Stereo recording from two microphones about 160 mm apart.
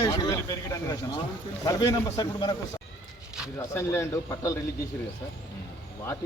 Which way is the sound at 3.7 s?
15° left (ahead or behind).